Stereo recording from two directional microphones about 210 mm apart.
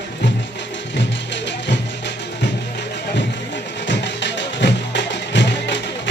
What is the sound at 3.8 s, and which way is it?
Music, 55° left (ahead or behind).